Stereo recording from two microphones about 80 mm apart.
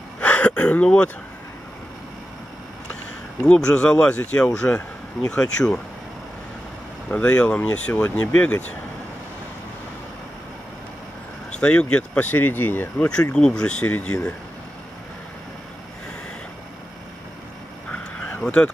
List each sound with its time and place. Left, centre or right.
0.2 s a sound: centre
3.4 s speech: centre
7.1 s speech: centre
11.6 s speech: centre
13.3 s speech: centre
17.9 s a sound: centre